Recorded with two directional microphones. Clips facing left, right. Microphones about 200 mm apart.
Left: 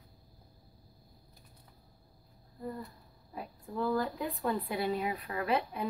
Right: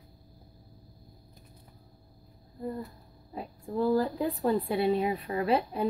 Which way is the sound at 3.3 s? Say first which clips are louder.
Right 6 dB; 30° right (ahead or behind).